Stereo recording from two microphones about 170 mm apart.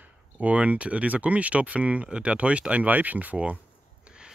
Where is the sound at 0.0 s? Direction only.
10° right (ahead or behind).